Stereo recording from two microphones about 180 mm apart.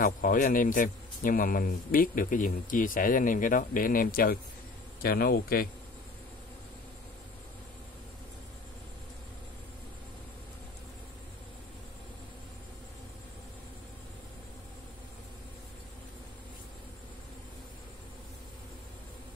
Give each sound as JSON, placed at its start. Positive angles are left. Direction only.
{"t": 0.0, "sound": "a man's voice", "side_deg": 50}